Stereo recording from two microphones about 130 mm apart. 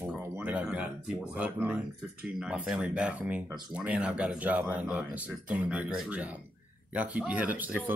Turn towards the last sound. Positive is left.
turn(degrees=-10)  # may be behind; listen again after turning